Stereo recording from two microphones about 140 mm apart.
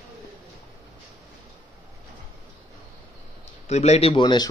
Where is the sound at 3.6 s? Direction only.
50° left (ahead or behind).